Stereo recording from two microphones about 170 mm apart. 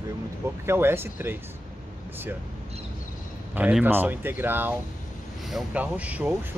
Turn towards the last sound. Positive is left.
turn(degrees=-10)  # may be behind; listen again after turning